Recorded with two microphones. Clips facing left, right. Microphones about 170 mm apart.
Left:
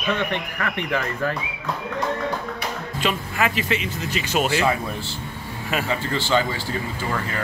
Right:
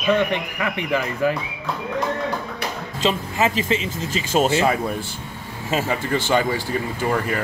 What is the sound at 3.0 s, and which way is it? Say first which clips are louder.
Speech: right 3 dB; 25° right (ahead or behind).